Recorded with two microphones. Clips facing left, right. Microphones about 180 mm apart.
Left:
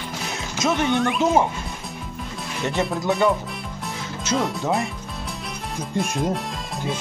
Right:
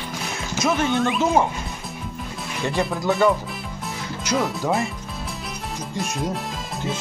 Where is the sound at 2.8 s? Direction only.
Centre (ahead or behind).